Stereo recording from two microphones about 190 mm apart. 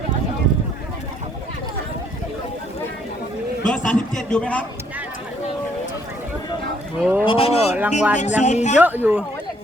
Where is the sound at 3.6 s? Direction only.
5° left (ahead or behind).